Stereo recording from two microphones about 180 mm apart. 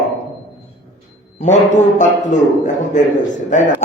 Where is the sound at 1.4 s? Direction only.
40° left (ahead or behind).